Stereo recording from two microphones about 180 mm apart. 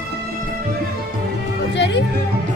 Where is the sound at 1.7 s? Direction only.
75° left (ahead or behind).